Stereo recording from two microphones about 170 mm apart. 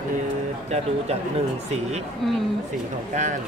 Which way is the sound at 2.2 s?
Centre (ahead or behind).